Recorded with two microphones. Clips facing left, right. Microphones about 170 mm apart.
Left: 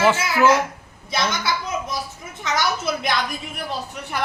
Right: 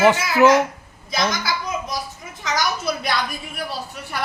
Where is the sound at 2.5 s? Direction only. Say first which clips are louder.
Even; 25° left (ahead or behind).